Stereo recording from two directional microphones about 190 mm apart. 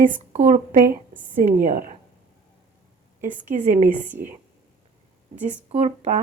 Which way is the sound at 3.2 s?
40° right (ahead or behind).